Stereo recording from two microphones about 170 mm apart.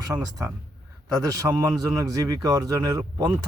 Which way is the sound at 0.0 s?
20° right (ahead or behind).